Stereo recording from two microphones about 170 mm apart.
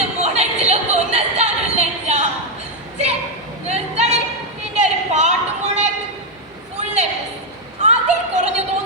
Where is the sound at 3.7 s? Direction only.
40° right (ahead or behind).